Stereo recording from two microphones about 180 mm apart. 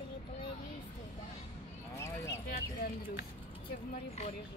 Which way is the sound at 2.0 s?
15° left (ahead or behind).